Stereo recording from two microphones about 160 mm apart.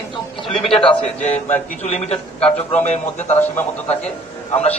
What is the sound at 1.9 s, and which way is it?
Speech, 45° left (ahead or behind).